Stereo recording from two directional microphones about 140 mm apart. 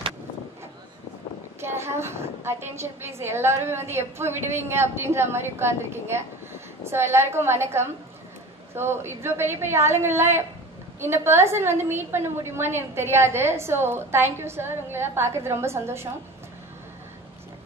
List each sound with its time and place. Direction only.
1.6 s a woman's voice: 20° right (ahead or behind)